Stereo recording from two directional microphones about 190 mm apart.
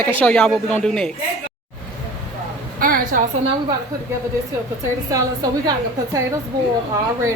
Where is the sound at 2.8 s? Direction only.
50° right (ahead or behind).